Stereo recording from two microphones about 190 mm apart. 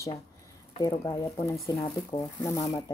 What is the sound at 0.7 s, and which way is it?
Speech, 20° left (ahead or behind).